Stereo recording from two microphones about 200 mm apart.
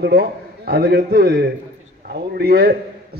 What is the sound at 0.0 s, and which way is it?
A man's voice, 50° right (ahead or behind).